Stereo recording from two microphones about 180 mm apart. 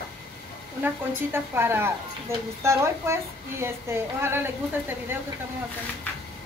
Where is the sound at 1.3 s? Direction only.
15° right (ahead or behind).